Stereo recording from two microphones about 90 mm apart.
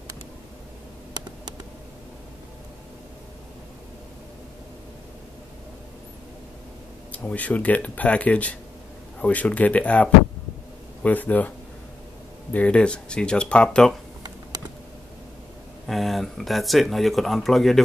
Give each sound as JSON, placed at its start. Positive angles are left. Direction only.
{"t": 7.1, "sound": "speech", "side_deg": 15}
{"t": 12.5, "sound": "speech", "side_deg": 10}
{"t": 15.9, "sound": "speech", "side_deg": 0}